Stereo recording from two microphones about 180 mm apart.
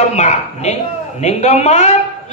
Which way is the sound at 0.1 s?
40° left (ahead or behind).